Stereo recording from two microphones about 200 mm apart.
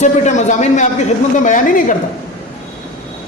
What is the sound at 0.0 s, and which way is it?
A woman's voice, 35° left (ahead or behind).